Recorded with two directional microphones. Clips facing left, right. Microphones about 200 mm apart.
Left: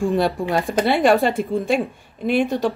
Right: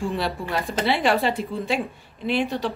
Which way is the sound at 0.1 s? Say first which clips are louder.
Left 7 dB; 45° left (ahead or behind).